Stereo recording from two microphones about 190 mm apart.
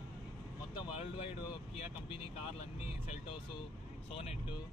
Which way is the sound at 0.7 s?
30° left (ahead or behind).